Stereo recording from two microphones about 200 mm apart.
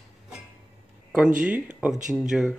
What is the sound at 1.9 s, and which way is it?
Speech, 40° right (ahead or behind).